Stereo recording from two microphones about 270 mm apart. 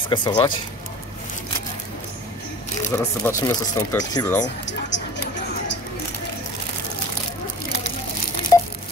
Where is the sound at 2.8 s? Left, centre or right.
Centre.